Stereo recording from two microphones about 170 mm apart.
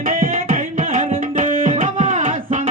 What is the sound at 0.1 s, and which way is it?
Music, 50° right (ahead or behind).